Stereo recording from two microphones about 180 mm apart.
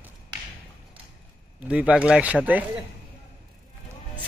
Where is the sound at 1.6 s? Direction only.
5° right (ahead or behind).